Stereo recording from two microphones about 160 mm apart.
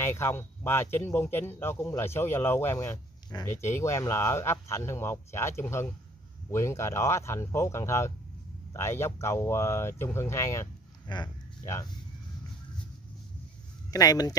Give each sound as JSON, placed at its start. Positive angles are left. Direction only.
{"t": 0.0, "sound": "speech", "side_deg": 15}
{"t": 13.8, "sound": "speech", "side_deg": 25}